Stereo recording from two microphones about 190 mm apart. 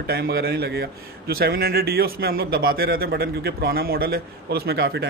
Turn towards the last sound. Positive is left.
turn(degrees=-60)  # may be behind; listen again after turning